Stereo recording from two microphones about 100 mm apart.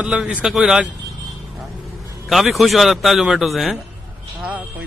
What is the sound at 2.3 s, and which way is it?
A man's voice, centre (ahead or behind).